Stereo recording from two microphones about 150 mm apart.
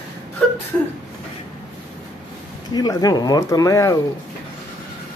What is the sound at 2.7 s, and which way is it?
Speech, 25° left (ahead or behind).